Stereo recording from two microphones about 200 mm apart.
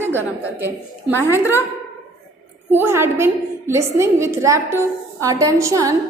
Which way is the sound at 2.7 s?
10° right (ahead or behind).